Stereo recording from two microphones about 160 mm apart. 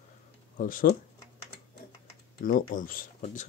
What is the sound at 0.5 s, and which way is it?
Speech, 60° left (ahead or behind).